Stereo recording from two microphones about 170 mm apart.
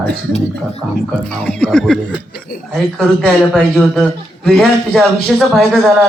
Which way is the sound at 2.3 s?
60° left (ahead or behind).